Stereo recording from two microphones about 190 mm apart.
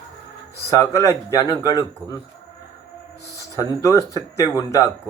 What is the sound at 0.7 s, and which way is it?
Speech, 15° left (ahead or behind).